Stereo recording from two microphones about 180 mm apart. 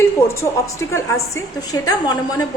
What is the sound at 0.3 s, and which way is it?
A woman's voice, 15° left (ahead or behind).